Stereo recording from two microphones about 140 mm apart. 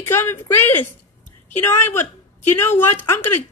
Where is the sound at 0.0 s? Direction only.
15° left (ahead or behind).